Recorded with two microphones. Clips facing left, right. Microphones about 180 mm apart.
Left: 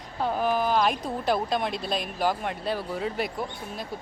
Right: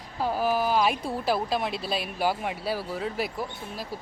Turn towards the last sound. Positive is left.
turn(degrees=-5)  # may be behind; listen again after turning